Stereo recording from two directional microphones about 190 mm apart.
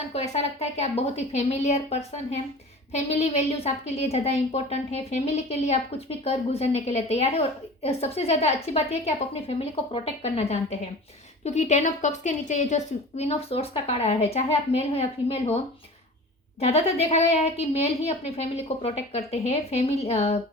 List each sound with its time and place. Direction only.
0.1 s a woman's voice: 35° left (ahead or behind)
16.6 s a woman's voice: 35° left (ahead or behind)